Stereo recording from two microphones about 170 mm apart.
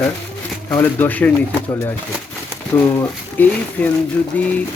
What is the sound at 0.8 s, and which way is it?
Speech, 10° left (ahead or behind).